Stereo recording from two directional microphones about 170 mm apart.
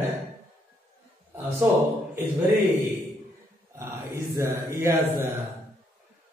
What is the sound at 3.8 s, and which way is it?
A man's voice, 15° right (ahead or behind).